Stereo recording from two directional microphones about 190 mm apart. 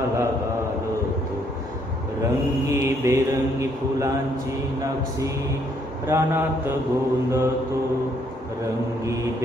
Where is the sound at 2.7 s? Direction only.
15° right (ahead or behind).